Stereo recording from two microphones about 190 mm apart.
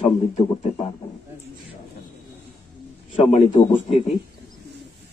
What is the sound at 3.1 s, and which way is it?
A man's voice, 30° left (ahead or behind).